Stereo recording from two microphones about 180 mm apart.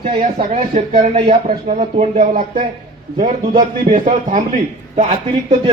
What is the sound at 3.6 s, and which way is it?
Speech, 50° right (ahead or behind).